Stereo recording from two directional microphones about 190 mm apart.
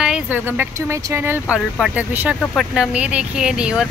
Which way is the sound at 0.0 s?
5° right (ahead or behind).